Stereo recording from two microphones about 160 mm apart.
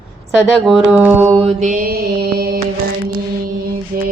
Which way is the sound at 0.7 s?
5° right (ahead or behind).